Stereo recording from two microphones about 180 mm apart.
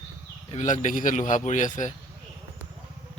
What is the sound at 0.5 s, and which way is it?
Speech, 40° left (ahead or behind).